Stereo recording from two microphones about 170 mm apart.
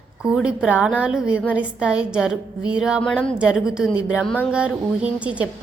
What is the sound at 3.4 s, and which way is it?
A woman's voice, 5° right (ahead or behind).